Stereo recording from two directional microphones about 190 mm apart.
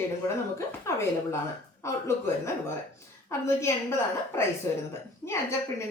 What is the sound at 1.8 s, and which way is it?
Speech, 15° left (ahead or behind).